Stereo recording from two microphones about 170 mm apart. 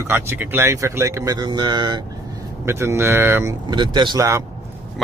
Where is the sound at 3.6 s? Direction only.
25° right (ahead or behind).